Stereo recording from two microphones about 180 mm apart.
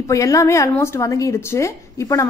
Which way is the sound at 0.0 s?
15° left (ahead or behind).